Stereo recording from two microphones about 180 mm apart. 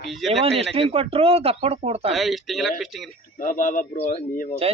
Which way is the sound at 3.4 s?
45° left (ahead or behind).